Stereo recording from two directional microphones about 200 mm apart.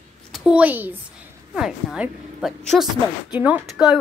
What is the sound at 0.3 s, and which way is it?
A woman's voice, 5° right (ahead or behind).